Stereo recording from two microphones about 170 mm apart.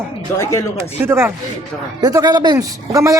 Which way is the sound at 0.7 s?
15° right (ahead or behind).